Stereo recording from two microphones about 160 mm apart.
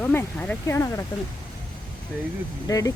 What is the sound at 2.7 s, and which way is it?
Speech, 20° left (ahead or behind).